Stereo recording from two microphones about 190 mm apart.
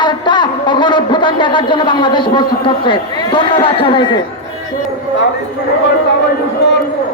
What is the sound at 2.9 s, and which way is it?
Speech, 25° left (ahead or behind).